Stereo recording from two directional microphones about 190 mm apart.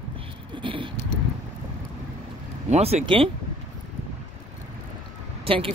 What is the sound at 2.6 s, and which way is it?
Speech, 35° right (ahead or behind).